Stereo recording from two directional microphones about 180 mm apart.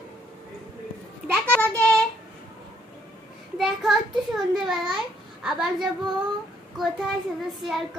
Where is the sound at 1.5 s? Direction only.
10° left (ahead or behind).